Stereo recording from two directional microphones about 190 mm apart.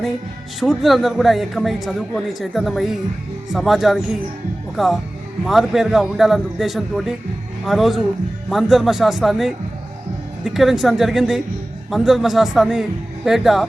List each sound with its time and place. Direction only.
0.6 s a man's voice: centre (ahead or behind)